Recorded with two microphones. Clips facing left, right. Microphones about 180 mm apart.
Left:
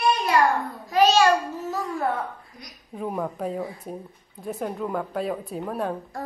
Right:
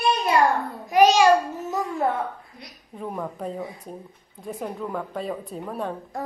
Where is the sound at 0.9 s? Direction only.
15° right (ahead or behind).